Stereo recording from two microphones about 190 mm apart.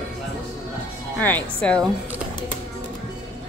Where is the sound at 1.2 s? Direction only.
10° left (ahead or behind).